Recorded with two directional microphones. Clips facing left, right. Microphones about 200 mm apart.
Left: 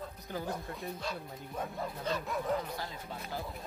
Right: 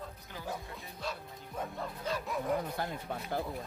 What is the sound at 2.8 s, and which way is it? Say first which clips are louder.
Speech: right 4 dB; 55° right (ahead or behind).